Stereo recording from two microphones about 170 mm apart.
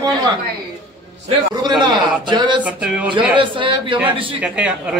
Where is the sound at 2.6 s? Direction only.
5° right (ahead or behind).